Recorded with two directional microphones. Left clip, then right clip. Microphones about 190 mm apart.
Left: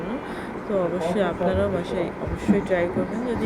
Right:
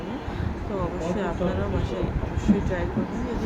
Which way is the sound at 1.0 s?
15° left (ahead or behind).